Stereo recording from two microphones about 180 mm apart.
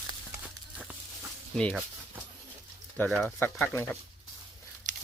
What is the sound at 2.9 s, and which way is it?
Speech, 10° left (ahead or behind).